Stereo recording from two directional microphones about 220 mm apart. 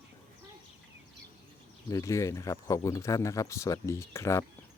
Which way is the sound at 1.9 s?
15° left (ahead or behind).